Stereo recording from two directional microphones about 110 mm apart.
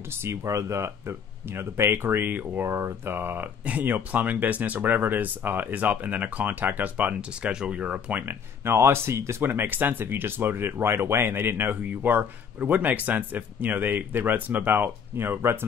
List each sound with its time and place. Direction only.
0.1 s speech: 25° right (ahead or behind)